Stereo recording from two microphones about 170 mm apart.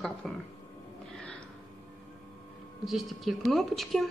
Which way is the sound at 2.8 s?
Centre (ahead or behind).